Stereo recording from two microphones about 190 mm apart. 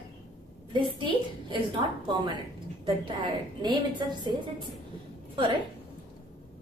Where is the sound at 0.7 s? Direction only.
25° right (ahead or behind).